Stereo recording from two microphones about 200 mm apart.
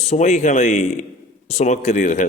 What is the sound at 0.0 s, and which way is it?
A man's voice, 35° left (ahead or behind).